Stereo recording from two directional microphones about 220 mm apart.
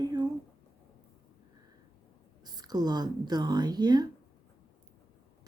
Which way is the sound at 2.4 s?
20° right (ahead or behind).